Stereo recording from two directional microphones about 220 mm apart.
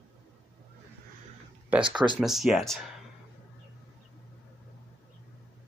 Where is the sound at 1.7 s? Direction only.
5° right (ahead or behind).